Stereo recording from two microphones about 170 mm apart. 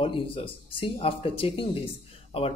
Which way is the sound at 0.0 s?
30° left (ahead or behind).